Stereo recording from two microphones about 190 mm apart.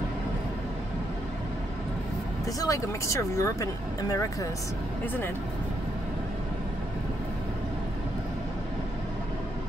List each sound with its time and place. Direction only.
2.6 s speech: 15° left (ahead or behind)